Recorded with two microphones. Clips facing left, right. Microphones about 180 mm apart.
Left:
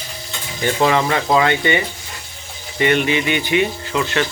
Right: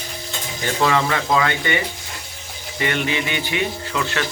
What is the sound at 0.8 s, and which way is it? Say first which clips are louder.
Speech: left 2 dB; 25° left (ahead or behind).